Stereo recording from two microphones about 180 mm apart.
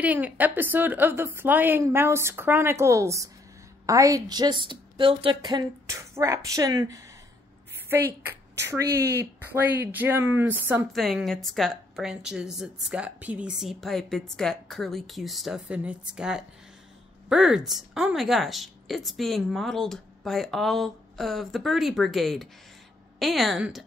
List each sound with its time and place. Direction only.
0.0 s a woman's voice: 10° right (ahead or behind)
10.9 s speech: centre (ahead or behind)